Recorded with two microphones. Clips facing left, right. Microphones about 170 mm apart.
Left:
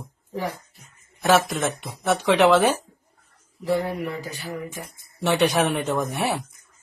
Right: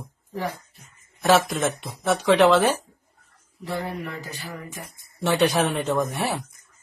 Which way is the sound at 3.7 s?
20° left (ahead or behind).